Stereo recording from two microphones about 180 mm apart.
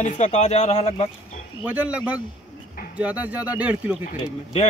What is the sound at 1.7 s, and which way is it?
Speech, 5° right (ahead or behind).